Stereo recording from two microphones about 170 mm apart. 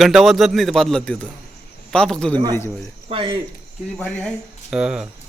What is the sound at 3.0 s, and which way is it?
Speech, 30° right (ahead or behind).